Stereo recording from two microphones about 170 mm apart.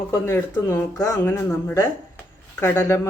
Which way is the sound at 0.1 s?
20° left (ahead or behind).